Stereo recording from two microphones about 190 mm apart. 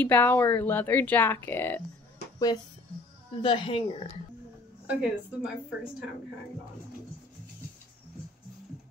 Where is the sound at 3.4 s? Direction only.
25° left (ahead or behind).